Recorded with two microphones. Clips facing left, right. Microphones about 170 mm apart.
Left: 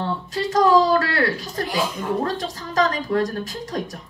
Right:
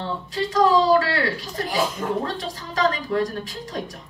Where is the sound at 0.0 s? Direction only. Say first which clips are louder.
Left 2 dB; 45° left (ahead or behind).